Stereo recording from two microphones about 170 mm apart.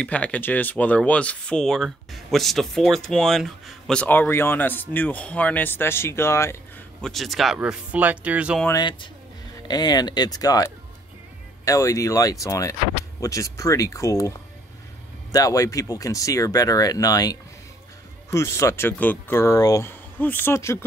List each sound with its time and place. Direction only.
0.0 s speech: 10° left (ahead or behind)
7.0 s speech: centre (ahead or behind)
8.6 s speech: 25° left (ahead or behind)
15.3 s speech: 20° left (ahead or behind)